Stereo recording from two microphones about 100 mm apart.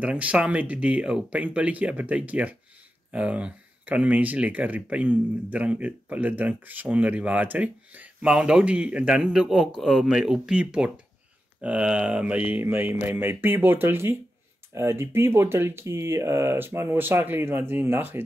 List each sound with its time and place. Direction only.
0.0 s speech: 15° right (ahead or behind)